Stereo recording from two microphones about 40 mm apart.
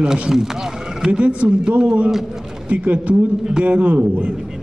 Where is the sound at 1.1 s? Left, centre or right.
Right.